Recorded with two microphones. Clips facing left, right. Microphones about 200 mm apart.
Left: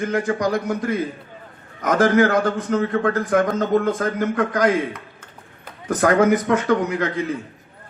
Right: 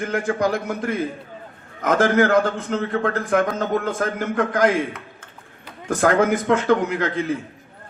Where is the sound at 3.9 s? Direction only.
50° right (ahead or behind).